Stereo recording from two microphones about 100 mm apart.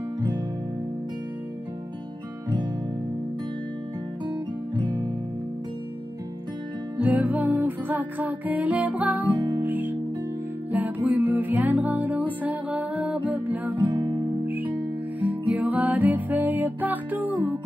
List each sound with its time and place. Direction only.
4.7 s music: 45° right (ahead or behind)
7.0 s music: 15° right (ahead or behind)
13.8 s music: 45° right (ahead or behind)
14.4 s music: 20° right (ahead or behind)